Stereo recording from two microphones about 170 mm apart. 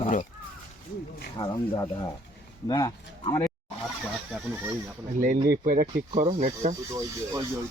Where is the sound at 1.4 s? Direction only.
20° left (ahead or behind).